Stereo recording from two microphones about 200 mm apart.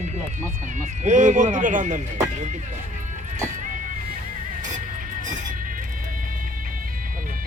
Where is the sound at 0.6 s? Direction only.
35° right (ahead or behind).